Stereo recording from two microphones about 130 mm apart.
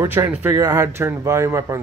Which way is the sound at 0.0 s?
15° right (ahead or behind).